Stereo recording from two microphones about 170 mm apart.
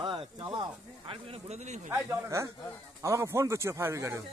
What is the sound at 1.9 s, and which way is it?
Speech, 15° right (ahead or behind).